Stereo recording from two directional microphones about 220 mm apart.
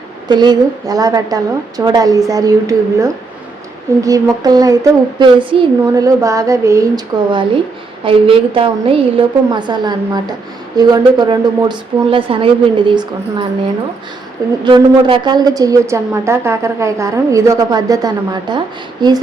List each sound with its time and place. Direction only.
0.3 s a woman's voice: 20° right (ahead or behind)
14.6 s a woman's voice: 20° right (ahead or behind)